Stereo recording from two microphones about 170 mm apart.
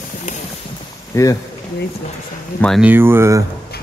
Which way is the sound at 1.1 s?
20° left (ahead or behind).